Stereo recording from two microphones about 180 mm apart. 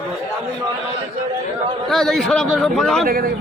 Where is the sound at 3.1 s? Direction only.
55° right (ahead or behind).